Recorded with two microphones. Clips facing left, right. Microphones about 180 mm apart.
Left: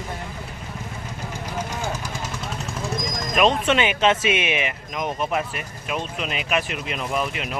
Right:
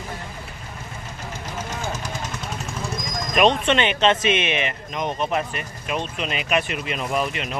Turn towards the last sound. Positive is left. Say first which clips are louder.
# right 1 dB
turn(degrees=5)  # may be behind; listen again after turning